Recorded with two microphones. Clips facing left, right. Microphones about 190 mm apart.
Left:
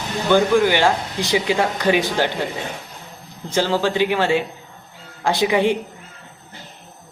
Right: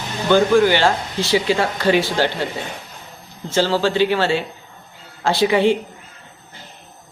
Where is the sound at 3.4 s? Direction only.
15° left (ahead or behind).